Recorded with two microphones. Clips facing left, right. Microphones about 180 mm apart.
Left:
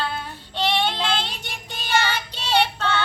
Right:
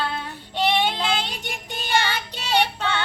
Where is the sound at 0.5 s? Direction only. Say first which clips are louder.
Right 1 dB; 15° right (ahead or behind).